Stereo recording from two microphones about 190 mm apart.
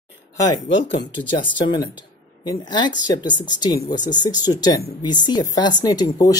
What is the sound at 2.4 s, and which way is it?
Speech, 25° left (ahead or behind).